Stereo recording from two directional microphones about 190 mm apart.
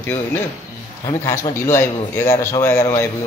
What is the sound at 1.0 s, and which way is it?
A man's voice, 15° left (ahead or behind).